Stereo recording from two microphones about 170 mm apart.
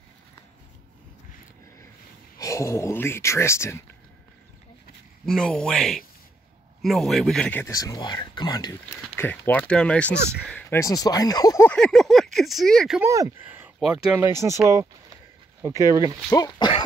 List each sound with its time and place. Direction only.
2.3 s speech: 20° left (ahead or behind)
5.2 s speech: centre (ahead or behind); by 9.0 s 25° left (ahead or behind)
9.1 s speech: 10° left (ahead or behind)
11.7 s a sound: 5° left (ahead or behind)
13.0 s speech: 20° right (ahead or behind)
14.4 s speech: 15° right (ahead or behind)
16.3 s speech: 25° left (ahead or behind)